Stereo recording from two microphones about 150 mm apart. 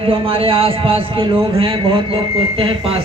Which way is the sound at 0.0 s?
40° right (ahead or behind).